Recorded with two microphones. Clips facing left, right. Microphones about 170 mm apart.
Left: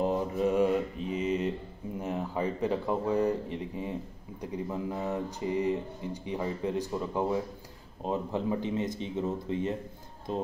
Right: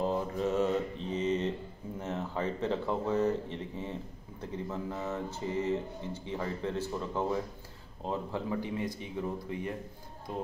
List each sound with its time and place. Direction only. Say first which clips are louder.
0.0 s mantra: left 3 dB; 15° left (ahead or behind)
2.0 s speech: left 3 dB; 15° left (ahead or behind)